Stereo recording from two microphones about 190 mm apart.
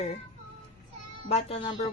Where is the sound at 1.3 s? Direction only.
35° left (ahead or behind).